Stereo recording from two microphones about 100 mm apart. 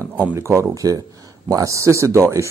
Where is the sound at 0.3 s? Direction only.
25° right (ahead or behind).